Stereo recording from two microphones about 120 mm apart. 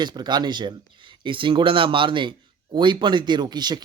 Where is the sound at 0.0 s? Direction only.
35° right (ahead or behind).